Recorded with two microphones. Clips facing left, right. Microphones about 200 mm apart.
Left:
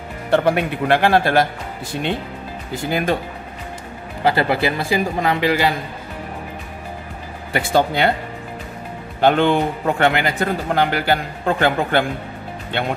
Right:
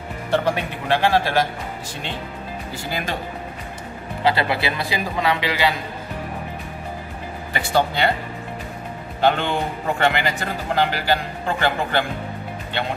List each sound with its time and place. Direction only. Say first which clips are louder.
0.3 s a man's voice: left 5 dB; 55° left (ahead or behind)
2.9 s speech: left 8 dB; 50° left (ahead or behind)
4.2 s speech: left 3 dB; 45° left (ahead or behind)
7.5 s a man's voice: left 3 dB; 55° left (ahead or behind)
9.2 s a man's voice: left 5 dB; 55° left (ahead or behind)